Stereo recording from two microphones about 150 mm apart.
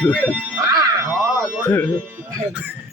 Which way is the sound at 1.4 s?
10° left (ahead or behind).